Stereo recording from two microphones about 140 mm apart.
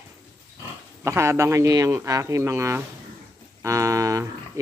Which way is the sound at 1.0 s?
20° right (ahead or behind).